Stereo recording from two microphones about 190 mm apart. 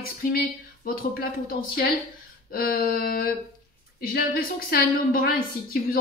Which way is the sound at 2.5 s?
50° left (ahead or behind).